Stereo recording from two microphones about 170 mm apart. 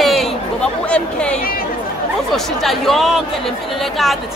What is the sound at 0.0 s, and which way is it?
Chatter, centre (ahead or behind).